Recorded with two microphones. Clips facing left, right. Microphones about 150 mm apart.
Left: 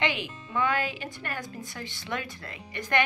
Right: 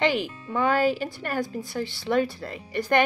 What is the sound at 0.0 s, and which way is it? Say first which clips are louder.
Speech: right 6 dB; 35° right (ahead or behind).